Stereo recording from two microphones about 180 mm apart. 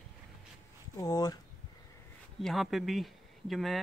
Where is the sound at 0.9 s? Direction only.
20° left (ahead or behind).